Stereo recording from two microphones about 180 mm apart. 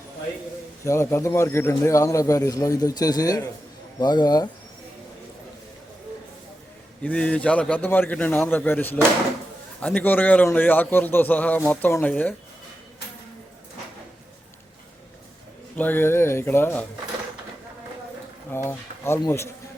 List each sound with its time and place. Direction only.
0.9 s a man's voice: 15° left (ahead or behind)
7.0 s a man's voice: 5° left (ahead or behind)
15.7 s a man's voice: 10° left (ahead or behind)
18.5 s a man's voice: 15° left (ahead or behind)